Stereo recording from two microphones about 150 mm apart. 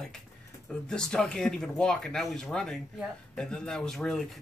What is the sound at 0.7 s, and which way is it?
Speech, 5° left (ahead or behind).